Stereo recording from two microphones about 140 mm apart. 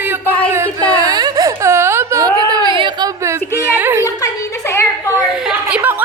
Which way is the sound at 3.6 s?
15° right (ahead or behind).